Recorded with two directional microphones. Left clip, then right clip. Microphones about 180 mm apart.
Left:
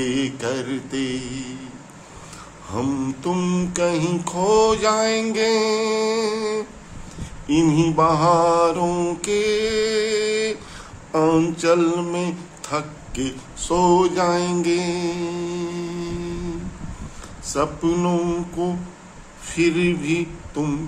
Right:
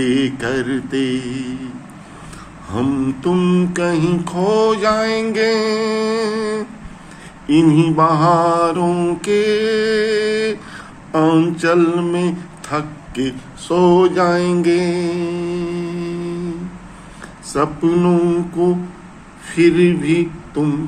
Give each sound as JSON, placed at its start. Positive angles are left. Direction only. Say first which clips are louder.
{"t": 0.0, "sound": "mantra", "louder": "right 5 dB", "side_deg": 15}
{"t": 2.7, "sound": "mantra", "louder": "right 5 dB", "side_deg": 15}
{"t": 11.1, "sound": "a sound", "louder": "right 4 dB", "side_deg": 15}
{"t": 17.5, "sound": "mantra", "louder": "right 5 dB", "side_deg": 15}